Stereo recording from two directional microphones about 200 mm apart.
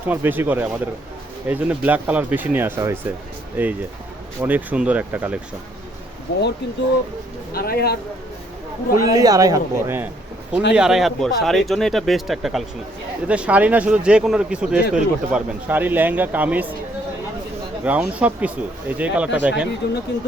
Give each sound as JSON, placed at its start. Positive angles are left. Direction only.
{"t": 0.1, "sound": "speech", "side_deg": -10}
{"t": 6.3, "sound": "speech", "side_deg": 55}
{"t": 7.5, "sound": "speech", "side_deg": 50}
{"t": 9.1, "sound": "speech", "side_deg": -15}
{"t": 10.8, "sound": "speech", "side_deg": 0}
{"t": 17.8, "sound": "speech", "side_deg": -5}
{"t": 19.8, "sound": "speech", "side_deg": 60}